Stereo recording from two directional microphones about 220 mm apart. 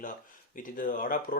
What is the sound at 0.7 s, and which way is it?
Speech, 40° left (ahead or behind).